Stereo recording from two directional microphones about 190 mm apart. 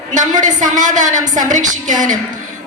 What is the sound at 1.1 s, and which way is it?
Speech, 20° right (ahead or behind).